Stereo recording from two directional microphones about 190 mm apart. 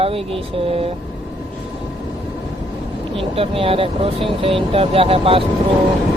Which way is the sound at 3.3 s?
30° right (ahead or behind).